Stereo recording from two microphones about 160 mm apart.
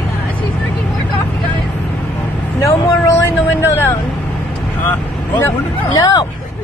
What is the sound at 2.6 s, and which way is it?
Vehicle, 20° left (ahead or behind).